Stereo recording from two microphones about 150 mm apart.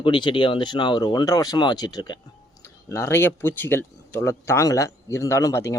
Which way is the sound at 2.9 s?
15° left (ahead or behind).